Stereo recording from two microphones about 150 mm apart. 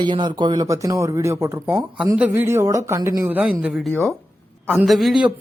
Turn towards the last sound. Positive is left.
turn(degrees=0)  # may be behind; listen again after turning